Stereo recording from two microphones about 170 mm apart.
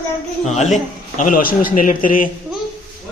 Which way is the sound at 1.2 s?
55° left (ahead or behind).